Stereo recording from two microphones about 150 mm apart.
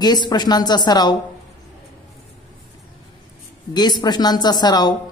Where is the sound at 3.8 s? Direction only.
30° left (ahead or behind).